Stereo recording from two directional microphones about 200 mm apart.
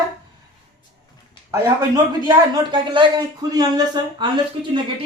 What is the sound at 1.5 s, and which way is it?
Speech, 20° right (ahead or behind).